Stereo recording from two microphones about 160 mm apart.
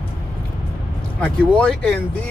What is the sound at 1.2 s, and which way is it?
Speech, 5° left (ahead or behind).